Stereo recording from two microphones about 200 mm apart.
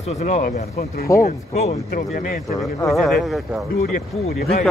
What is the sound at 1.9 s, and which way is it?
Speech, 45° left (ahead or behind).